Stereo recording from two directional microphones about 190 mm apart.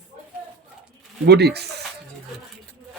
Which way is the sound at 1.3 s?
60° right (ahead or behind).